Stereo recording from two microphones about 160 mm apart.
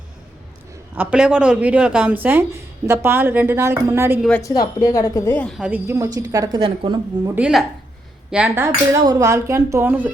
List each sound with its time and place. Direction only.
0.9 s speech: 5° right (ahead or behind)
4.2 s speech: 10° left (ahead or behind)
4.4 s a woman's voice: 20° left (ahead or behind)
5.5 s a woman's voice: 5° right (ahead or behind); by 7.0 s 30° right (ahead or behind)
7.3 s speech: 5° right (ahead or behind)
8.6 s speech: 20° right (ahead or behind)